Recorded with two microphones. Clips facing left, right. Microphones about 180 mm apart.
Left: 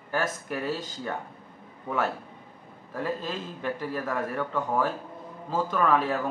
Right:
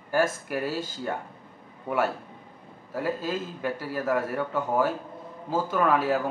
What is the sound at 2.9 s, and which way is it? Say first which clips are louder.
Speech: right 3 dB; 5° right (ahead or behind).